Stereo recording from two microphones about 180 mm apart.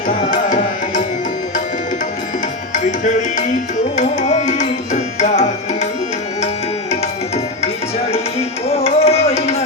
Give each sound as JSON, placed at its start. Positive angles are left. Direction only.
{"t": 0.1, "sound": "tabla", "side_deg": 45}
{"t": 2.7, "sound": "music", "side_deg": 45}
{"t": 3.9, "sound": "tabla", "side_deg": 40}
{"t": 8.1, "sound": "music", "side_deg": 35}